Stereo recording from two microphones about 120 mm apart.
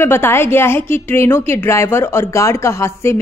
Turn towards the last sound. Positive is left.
turn(degrees=20)  # may be behind; listen again after turning